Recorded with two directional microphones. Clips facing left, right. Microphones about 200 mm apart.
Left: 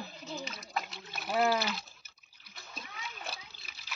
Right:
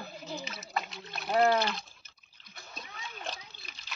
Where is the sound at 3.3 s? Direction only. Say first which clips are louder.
Right 3 dB; 5° left (ahead or behind).